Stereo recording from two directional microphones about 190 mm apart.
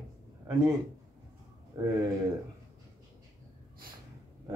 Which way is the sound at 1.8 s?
20° right (ahead or behind).